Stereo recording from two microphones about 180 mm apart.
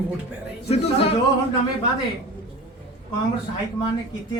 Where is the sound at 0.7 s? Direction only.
35° left (ahead or behind).